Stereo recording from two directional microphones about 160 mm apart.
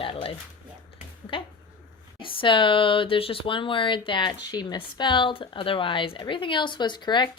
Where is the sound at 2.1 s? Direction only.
30° left (ahead or behind).